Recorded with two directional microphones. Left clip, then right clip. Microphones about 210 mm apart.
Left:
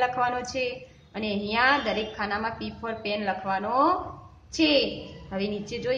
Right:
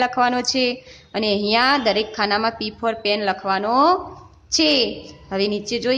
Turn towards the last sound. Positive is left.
turn(degrees=-50)  # may be behind; listen again after turning